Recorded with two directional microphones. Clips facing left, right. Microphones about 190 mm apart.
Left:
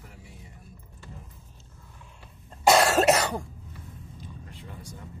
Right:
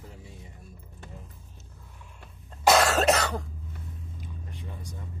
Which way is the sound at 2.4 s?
10° left (ahead or behind).